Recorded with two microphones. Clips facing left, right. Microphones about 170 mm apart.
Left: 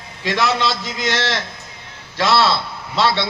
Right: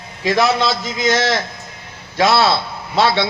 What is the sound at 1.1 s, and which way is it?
A man's voice, 45° right (ahead or behind).